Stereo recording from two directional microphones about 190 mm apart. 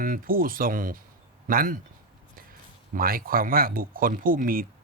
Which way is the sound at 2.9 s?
50° right (ahead or behind).